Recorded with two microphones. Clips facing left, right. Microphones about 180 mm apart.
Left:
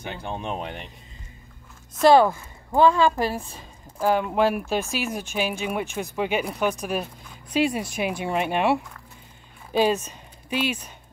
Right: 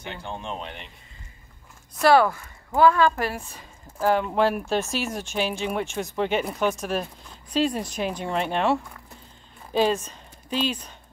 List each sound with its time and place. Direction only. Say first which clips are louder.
0.1 s speech: left 3 dB; 15° left (ahead or behind)
2.0 s speech: left 2 dB; 20° left (ahead or behind)
4.0 s speech: even; 10° left (ahead or behind)